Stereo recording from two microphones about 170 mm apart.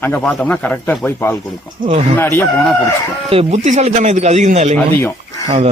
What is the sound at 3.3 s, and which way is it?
Speech, 40° right (ahead or behind).